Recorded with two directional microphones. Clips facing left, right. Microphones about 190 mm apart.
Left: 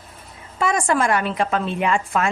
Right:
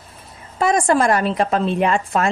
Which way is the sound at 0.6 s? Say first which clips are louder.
Right 4 dB; 40° right (ahead or behind).